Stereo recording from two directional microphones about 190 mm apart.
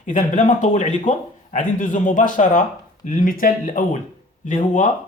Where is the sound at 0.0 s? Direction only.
40° left (ahead or behind).